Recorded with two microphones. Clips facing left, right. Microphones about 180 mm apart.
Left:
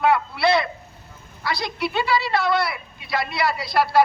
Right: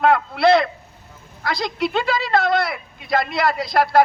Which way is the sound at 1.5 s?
50° right (ahead or behind).